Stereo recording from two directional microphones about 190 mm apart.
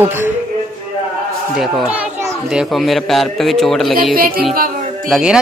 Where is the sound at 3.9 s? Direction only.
50° right (ahead or behind).